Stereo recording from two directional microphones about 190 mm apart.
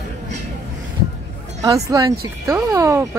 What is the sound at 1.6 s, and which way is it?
Speech, 15° right (ahead or behind).